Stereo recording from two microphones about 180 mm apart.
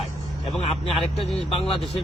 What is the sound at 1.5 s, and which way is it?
Speech, 30° left (ahead or behind).